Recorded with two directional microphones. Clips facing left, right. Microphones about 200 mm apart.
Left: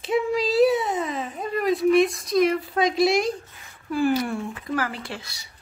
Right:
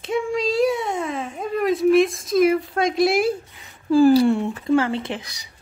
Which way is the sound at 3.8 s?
35° right (ahead or behind).